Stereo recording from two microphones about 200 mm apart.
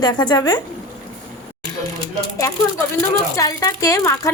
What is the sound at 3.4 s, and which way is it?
Speech, 15° left (ahead or behind).